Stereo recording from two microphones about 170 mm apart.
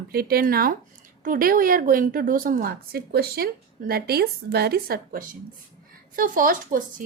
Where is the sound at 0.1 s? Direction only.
65° right (ahead or behind).